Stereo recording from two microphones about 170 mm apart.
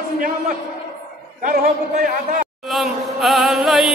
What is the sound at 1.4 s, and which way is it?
Speech, 55° right (ahead or behind).